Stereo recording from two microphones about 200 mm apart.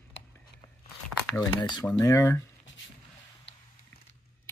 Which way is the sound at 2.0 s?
15° left (ahead or behind).